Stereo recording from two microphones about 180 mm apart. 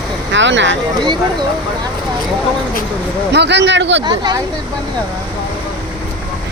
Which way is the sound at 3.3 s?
70° right (ahead or behind).